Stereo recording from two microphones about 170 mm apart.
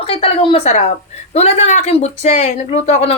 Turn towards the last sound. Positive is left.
turn(degrees=40)  # may be behind; listen again after turning